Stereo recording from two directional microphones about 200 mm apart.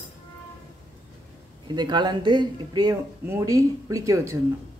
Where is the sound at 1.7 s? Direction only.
20° right (ahead or behind).